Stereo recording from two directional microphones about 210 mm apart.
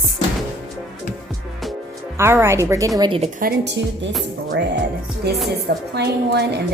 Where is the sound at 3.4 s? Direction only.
55° right (ahead or behind).